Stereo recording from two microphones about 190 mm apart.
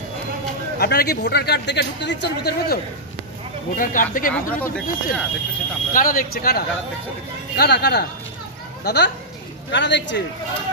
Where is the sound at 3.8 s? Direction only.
45° left (ahead or behind).